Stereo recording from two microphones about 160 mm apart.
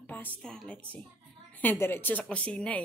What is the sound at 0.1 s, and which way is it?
A woman's voice, 10° left (ahead or behind).